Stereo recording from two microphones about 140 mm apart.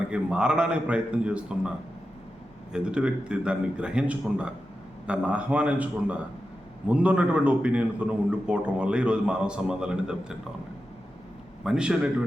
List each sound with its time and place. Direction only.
0.1 s a man's voice: 5° right (ahead or behind)
2.7 s a man's voice: 5° right (ahead or behind)
11.6 s a man's voice: 5° right (ahead or behind)